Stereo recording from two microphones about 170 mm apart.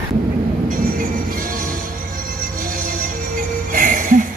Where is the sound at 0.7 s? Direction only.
55° right (ahead or behind).